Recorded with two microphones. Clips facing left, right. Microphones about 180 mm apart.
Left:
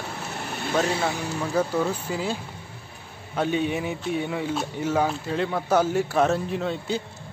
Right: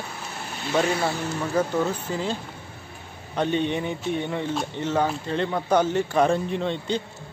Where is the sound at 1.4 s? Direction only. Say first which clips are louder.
Even; 5° left (ahead or behind).